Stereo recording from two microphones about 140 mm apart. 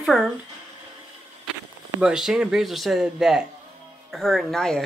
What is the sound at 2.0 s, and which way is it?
Speech, 5° right (ahead or behind).